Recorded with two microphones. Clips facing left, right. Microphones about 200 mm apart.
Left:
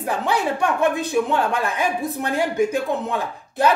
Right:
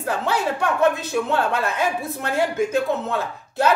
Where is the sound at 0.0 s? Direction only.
15° left (ahead or behind).